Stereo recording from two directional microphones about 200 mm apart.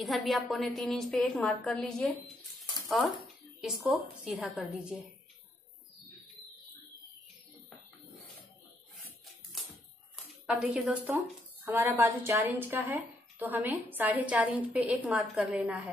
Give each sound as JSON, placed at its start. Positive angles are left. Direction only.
{"t": 0.0, "sound": "a woman's voice", "side_deg": 0}
{"t": 3.6, "sound": "a woman's voice", "side_deg": -5}
{"t": 10.4, "sound": "a woman's voice", "side_deg": 0}